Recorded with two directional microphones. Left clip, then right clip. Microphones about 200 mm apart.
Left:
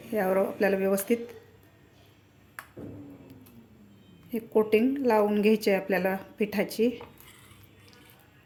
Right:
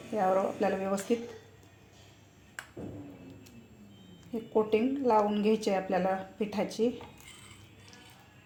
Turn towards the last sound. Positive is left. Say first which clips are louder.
# left 4 dB
turn(degrees=30)  # may be behind; listen again after turning